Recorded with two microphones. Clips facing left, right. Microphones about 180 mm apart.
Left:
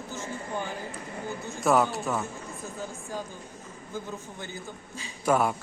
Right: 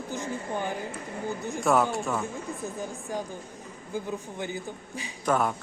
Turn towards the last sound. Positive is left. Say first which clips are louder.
# left 1 dB
turn(degrees=10)  # may be behind; listen again after turning